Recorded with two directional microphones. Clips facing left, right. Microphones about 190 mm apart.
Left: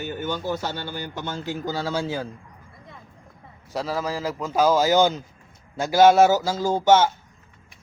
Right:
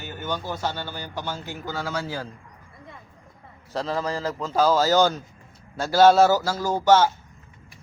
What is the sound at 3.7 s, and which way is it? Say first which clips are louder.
A man's voice: even; 10° left (ahead or behind).